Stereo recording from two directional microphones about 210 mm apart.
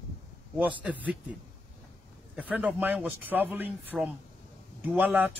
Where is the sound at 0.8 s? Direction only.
5° right (ahead or behind).